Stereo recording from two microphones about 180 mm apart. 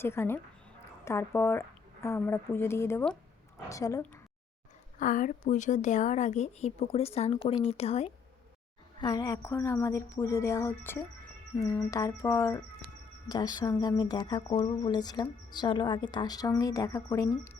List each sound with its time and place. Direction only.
0.0 s a woman's voice: 15° left (ahead or behind)
4.9 s a woman's voice: 45° left (ahead or behind)
9.0 s a woman's voice: 20° left (ahead or behind)